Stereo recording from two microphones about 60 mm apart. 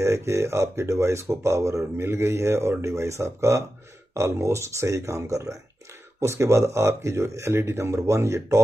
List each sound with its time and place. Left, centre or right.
0.0 s speech: right